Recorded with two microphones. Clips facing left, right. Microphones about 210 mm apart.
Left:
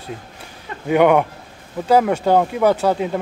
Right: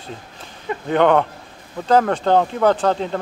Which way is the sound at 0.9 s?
10° left (ahead or behind).